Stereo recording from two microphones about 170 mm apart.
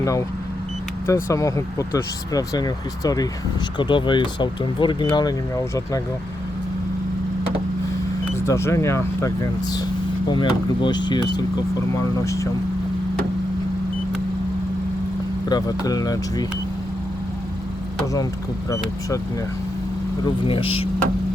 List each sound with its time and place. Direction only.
0.0 s speech: 20° left (ahead or behind)
8.4 s speech: 15° left (ahead or behind)
15.4 s speech: 25° left (ahead or behind)
18.0 s speech: 20° left (ahead or behind)
20.5 s speech: 35° left (ahead or behind)